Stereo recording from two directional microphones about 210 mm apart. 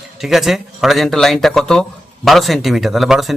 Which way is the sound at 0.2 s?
Centre (ahead or behind).